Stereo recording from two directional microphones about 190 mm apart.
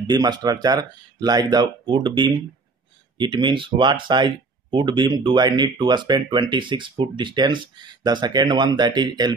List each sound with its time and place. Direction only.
0.0 s speech: 20° right (ahead or behind)